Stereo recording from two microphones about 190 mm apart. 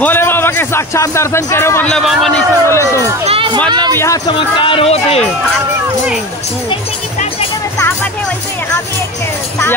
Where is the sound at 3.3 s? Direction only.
25° right (ahead or behind).